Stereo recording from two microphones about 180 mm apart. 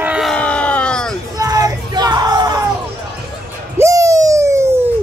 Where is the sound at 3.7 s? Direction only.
15° right (ahead or behind).